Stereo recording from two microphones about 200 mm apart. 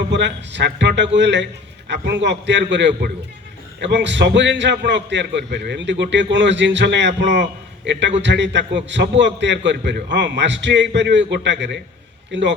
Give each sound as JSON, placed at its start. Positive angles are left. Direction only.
{"t": 0.1, "sound": "a man's voice", "side_deg": -60}